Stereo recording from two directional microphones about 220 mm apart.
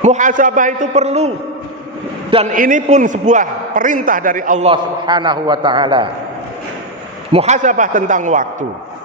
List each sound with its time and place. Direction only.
0.0 s a man's voice: 35° right (ahead or behind)
2.3 s a man's voice: 35° right (ahead or behind)
4.6 s a man's voice: 20° right (ahead or behind)
7.3 s a man's voice: 30° right (ahead or behind)